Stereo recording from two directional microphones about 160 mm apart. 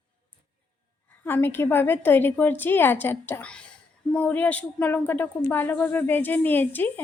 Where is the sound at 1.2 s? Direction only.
10° left (ahead or behind).